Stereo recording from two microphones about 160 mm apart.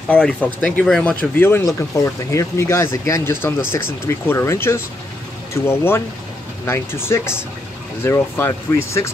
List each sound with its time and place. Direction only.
0.1 s speech: 5° left (ahead or behind)